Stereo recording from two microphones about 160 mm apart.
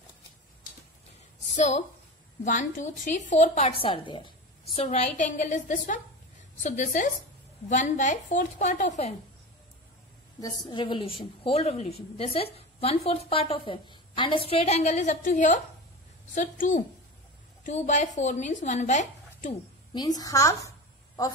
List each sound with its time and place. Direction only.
1.5 s a woman's voice: 50° left (ahead or behind)
10.4 s a woman's voice: 25° left (ahead or behind); by 19.5 s 45° left (ahead or behind)
19.9 s a woman's voice: 25° left (ahead or behind)